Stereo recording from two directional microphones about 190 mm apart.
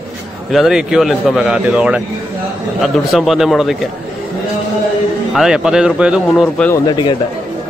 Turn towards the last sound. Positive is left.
turn(degrees=25)  # may be behind; listen again after turning